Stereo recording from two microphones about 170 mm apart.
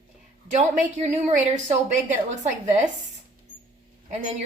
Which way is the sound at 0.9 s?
40° right (ahead or behind).